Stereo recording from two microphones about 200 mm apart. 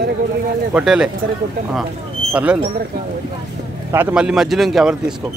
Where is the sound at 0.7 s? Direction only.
5° right (ahead or behind).